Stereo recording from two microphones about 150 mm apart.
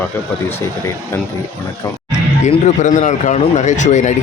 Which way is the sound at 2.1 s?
50° left (ahead or behind).